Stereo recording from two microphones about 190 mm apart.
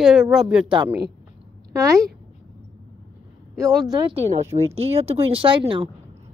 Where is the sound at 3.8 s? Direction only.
20° right (ahead or behind).